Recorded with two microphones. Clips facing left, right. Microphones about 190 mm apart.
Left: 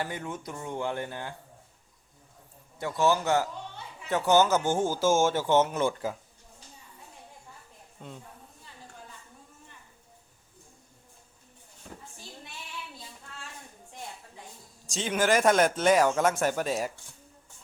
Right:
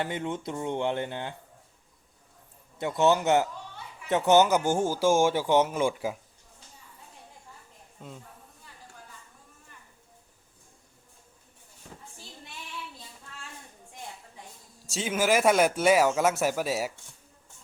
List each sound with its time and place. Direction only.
0.0 s speech: 25° right (ahead or behind)
2.7 s speech: 20° right (ahead or behind)
8.0 s speech: 5° right (ahead or behind)
14.8 s speech: 5° right (ahead or behind)